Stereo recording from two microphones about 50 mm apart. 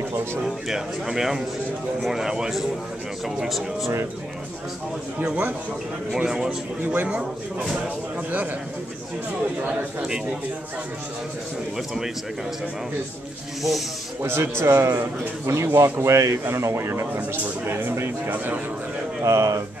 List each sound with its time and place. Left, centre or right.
0.1 s a sound: right
0.7 s speech: centre
3.4 s speech: centre
6.1 s a man's voice: centre
13.6 s speech: centre
14.2 s a man's voice: right
18.3 s a man's voice: right
19.2 s speech: right